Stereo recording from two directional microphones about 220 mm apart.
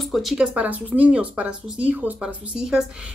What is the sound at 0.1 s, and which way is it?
Speech, centre (ahead or behind).